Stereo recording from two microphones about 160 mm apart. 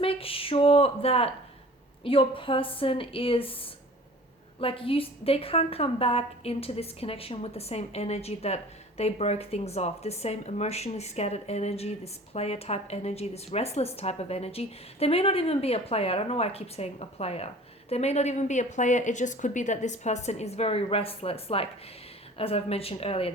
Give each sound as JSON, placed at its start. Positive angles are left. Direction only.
{"t": 0.0, "sound": "a woman's voice", "side_deg": 35}